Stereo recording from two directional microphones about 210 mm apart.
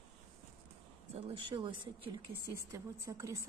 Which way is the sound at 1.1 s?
30° right (ahead or behind).